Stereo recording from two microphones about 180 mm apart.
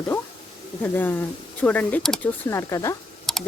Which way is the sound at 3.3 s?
Centre (ahead or behind).